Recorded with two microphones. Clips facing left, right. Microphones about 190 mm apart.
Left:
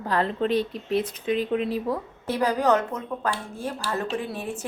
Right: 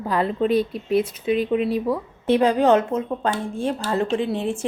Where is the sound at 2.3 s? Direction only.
25° right (ahead or behind).